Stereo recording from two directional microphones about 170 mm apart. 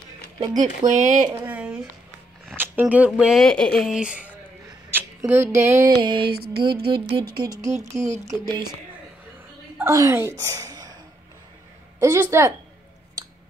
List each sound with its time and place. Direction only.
0.6 s speech: 45° right (ahead or behind)
1.3 s a sound: 10° right (ahead or behind)
3.2 s speech: centre (ahead or behind)
4.9 s a sound: 15° right (ahead or behind)
6.3 s music: 65° right (ahead or behind)
6.6 s speech: 30° right (ahead or behind)
9.8 s a woman's voice: 15° right (ahead or behind)
12.0 s a woman's voice: 15° right (ahead or behind)